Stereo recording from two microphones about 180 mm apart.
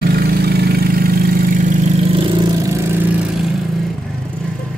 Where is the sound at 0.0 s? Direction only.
60° right (ahead or behind); by 3.1 s 15° right (ahead or behind).